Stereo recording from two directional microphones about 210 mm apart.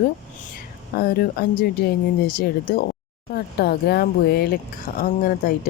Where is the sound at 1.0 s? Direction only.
45° left (ahead or behind).